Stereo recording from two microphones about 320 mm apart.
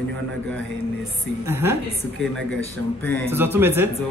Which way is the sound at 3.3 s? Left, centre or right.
Centre.